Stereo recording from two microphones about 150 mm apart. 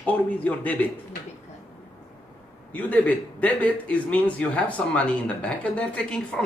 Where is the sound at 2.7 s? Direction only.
10° left (ahead or behind).